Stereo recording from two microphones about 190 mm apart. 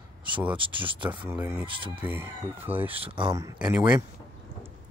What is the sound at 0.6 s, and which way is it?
Speech, 25° right (ahead or behind).